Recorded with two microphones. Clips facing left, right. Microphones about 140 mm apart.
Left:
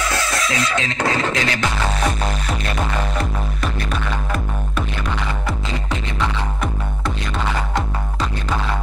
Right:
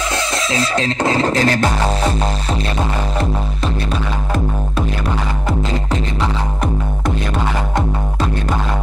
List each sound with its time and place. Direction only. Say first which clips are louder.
0.1 s beatboxing: right 2 dB; 30° right (ahead or behind)